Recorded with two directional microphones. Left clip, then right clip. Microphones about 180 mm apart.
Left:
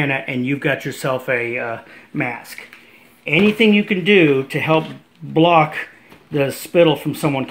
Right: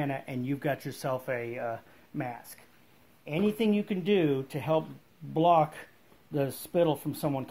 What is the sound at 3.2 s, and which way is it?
Speech, 50° right (ahead or behind).